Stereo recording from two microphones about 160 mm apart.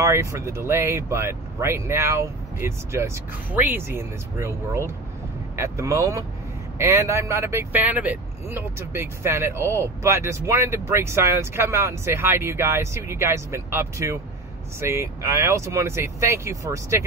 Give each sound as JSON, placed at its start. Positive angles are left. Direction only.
{"t": 0.0, "sound": "speech", "side_deg": -20}